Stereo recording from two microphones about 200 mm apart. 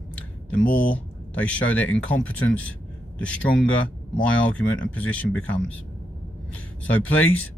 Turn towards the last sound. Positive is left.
turn(degrees=10)  # may be behind; listen again after turning